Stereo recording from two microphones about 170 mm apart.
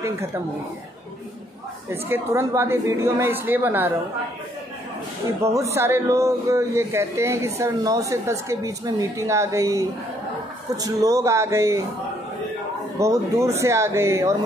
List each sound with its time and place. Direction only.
0.0 s speech: 15° right (ahead or behind)
2.0 s speech: 15° right (ahead or behind)
5.4 s speech: 20° right (ahead or behind)
13.0 s speech: 15° right (ahead or behind)